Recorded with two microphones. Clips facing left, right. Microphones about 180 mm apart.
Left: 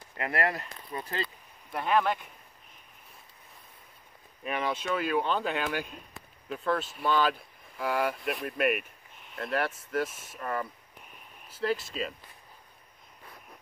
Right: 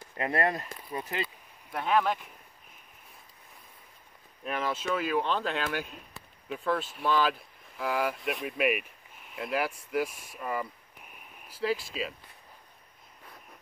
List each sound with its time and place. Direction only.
0.2 s speech: 25° right (ahead or behind)
1.7 s speech: centre (ahead or behind)
4.4 s speech: centre (ahead or behind)